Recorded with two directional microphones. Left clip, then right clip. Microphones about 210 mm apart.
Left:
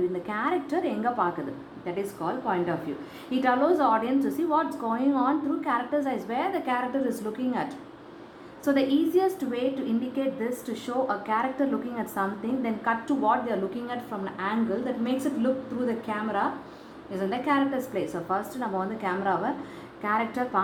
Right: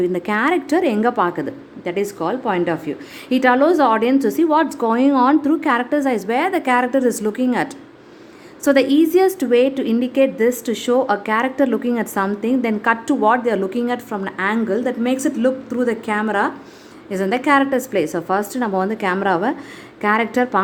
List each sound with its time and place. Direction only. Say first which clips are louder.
0.1 s a woman's voice: right 10 dB; 50° right (ahead or behind)